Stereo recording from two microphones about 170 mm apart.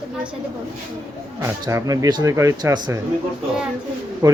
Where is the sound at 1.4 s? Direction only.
15° right (ahead or behind).